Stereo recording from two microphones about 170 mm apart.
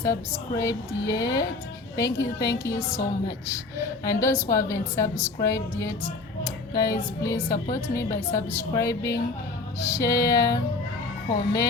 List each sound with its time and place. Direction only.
0.0 s a woman's voice: 20° left (ahead or behind)